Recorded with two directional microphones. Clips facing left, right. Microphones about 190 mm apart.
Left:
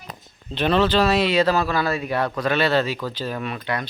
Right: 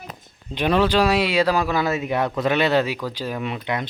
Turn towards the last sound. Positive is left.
turn(degrees=-20)  # may be behind; listen again after turning